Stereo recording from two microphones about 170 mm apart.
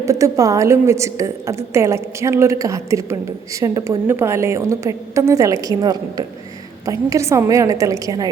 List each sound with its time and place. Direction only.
0.0 s a woman's voice: 20° right (ahead or behind)